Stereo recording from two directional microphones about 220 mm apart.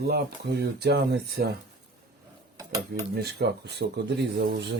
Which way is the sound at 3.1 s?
50° right (ahead or behind).